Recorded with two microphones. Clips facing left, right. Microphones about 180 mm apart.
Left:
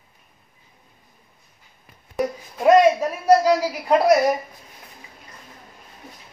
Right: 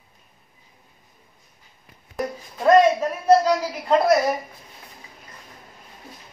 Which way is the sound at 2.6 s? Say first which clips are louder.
Left 1 dB; 10° left (ahead or behind).